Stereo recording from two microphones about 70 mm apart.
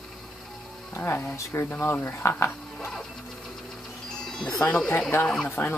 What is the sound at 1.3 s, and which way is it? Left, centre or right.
Speech, left.